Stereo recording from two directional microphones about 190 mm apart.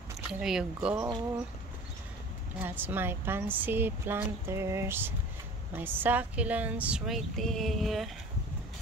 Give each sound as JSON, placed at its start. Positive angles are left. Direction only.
{"t": 0.3, "sound": "speech", "side_deg": -5}
{"t": 2.6, "sound": "speech", "side_deg": -10}